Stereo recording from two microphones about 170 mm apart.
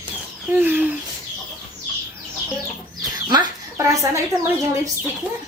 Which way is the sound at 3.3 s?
20° right (ahead or behind).